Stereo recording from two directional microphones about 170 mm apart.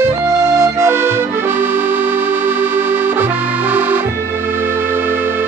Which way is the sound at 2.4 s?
10° right (ahead or behind).